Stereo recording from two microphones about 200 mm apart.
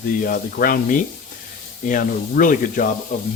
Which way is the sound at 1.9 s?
40° left (ahead or behind).